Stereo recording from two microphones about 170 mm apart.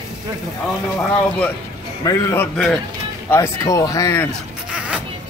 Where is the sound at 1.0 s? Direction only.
10° left (ahead or behind).